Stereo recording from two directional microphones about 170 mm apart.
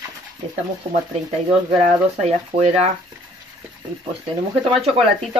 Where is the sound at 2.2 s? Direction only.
40° right (ahead or behind).